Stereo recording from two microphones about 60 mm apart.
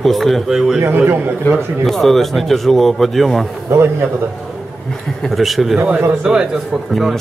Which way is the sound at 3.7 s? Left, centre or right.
Right.